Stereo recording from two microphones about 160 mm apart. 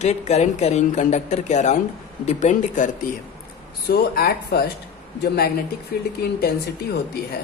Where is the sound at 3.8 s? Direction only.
75° left (ahead or behind).